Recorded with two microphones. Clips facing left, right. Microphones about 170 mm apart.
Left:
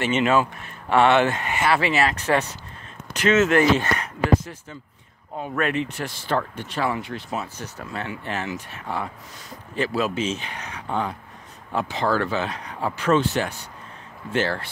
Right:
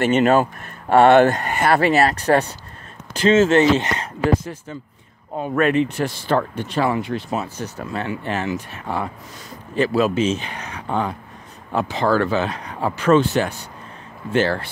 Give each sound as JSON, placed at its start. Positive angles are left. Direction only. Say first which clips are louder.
{"t": 0.0, "sound": "speech", "louder": "right 5 dB", "side_deg": -40}
{"t": 8.8, "sound": "speech", "louder": "right 3 dB", "side_deg": -55}
{"t": 9.8, "sound": "speech", "louder": "right 6 dB", "side_deg": -40}
{"t": 10.9, "sound": "speech", "louder": "right 3 dB", "side_deg": -65}
{"t": 11.7, "sound": "speech", "louder": "right 4 dB", "side_deg": -45}